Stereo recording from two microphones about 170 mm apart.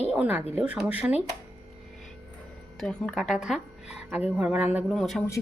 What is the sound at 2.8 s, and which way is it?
A woman's voice, 5° left (ahead or behind).